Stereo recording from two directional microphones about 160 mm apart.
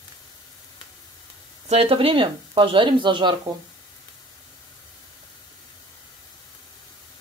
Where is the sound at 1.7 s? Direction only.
35° right (ahead or behind).